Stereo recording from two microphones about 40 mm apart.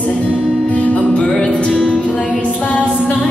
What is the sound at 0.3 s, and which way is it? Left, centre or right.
Music, right.